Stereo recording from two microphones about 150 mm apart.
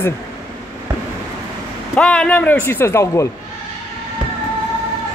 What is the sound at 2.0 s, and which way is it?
Speech, 5° left (ahead or behind).